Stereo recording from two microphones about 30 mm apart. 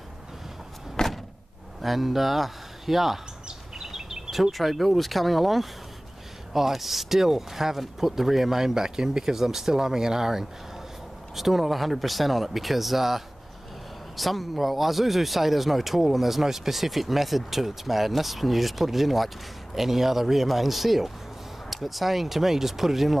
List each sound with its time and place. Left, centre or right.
1.0 s door: left
1.8 s speech: centre
3.8 s a sound: centre
4.4 s speech: centre